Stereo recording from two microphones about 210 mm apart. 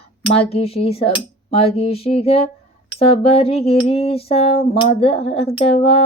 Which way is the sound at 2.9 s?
25° left (ahead or behind).